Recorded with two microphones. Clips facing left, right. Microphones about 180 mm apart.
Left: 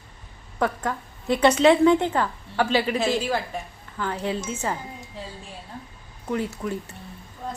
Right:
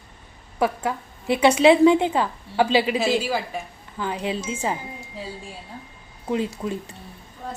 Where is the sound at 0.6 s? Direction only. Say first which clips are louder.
Right 2 dB; 10° right (ahead or behind).